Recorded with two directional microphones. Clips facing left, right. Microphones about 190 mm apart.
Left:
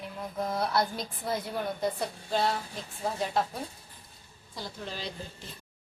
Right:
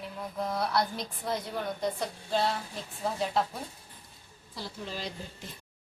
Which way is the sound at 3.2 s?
Centre (ahead or behind).